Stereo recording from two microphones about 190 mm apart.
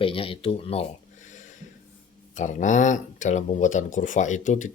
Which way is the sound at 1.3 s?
40° left (ahead or behind).